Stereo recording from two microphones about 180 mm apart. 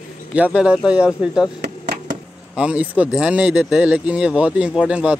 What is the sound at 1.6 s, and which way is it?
Chop, 45° right (ahead or behind).